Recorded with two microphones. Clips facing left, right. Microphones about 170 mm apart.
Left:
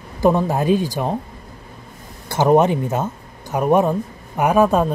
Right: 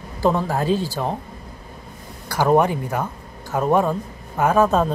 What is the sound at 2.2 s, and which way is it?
Speech, 20° left (ahead or behind).